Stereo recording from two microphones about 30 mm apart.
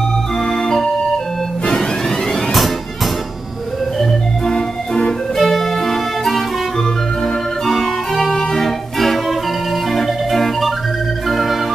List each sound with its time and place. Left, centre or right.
0.5 s music: centre
4.5 s organ: left
5.4 s music: centre
7.6 s music: centre
11.2 s organ: centre